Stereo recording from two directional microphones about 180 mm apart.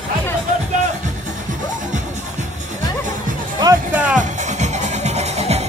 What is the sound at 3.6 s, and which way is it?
Music, 15° right (ahead or behind).